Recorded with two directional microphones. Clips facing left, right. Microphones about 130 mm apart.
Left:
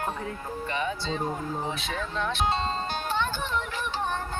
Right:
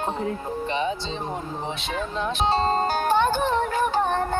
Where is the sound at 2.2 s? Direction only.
20° right (ahead or behind).